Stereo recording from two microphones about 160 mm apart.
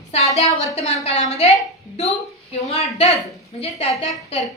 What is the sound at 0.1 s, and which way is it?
A woman's voice, 40° left (ahead or behind).